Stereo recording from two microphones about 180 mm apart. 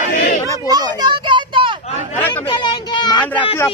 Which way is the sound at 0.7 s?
20° right (ahead or behind).